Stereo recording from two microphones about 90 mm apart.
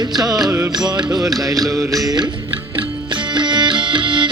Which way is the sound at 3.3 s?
60° right (ahead or behind).